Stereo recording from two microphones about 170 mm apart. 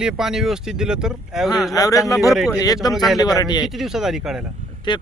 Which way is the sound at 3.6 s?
Centre (ahead or behind).